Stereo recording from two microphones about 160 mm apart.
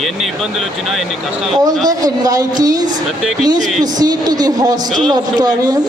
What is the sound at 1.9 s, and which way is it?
A woman's voice, 25° right (ahead or behind).